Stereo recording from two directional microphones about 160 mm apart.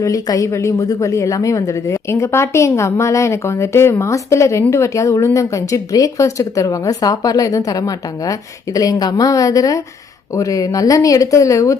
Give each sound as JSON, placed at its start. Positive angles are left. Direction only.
{"t": 0.0, "sound": "a woman's voice", "side_deg": 20}